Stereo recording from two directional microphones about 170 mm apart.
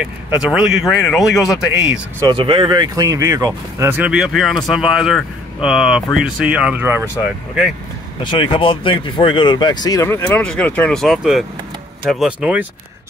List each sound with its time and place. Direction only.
0.0 s speech: 5° right (ahead or behind)
2.2 s speech: 30° right (ahead or behind); by 7.1 s 10° right (ahead or behind)
8.2 s speech: 30° left (ahead or behind); by 12.6 s 5° right (ahead or behind)